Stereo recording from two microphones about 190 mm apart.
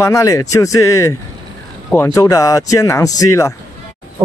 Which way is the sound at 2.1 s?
15° left (ahead or behind).